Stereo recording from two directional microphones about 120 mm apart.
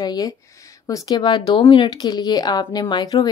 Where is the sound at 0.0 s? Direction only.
35° left (ahead or behind).